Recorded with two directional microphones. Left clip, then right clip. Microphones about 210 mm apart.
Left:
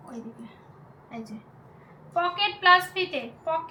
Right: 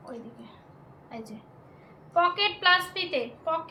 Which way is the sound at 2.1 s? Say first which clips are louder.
Right 2 dB; 40° right (ahead or behind).